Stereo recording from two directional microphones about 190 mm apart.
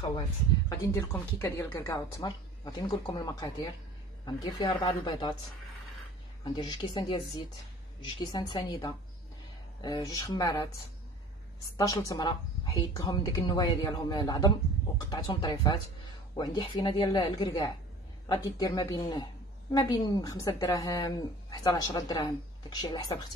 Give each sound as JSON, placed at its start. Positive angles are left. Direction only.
{"t": 0.7, "sound": "speech", "side_deg": 15}
{"t": 6.4, "sound": "speech", "side_deg": 25}
{"t": 11.7, "sound": "speech", "side_deg": 20}